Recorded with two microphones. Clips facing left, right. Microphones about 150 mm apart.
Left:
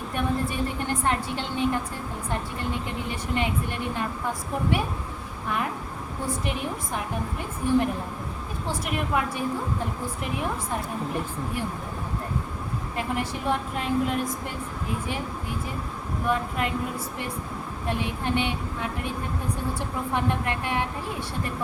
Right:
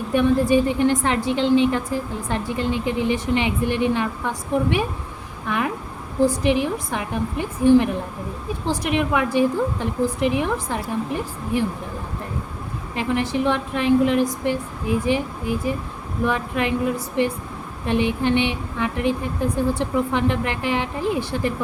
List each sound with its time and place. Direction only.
0.1 s a woman's voice: 90° right
13.0 s a woman's voice: 90° right